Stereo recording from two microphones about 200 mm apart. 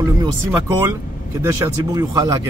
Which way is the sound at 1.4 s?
15° right (ahead or behind).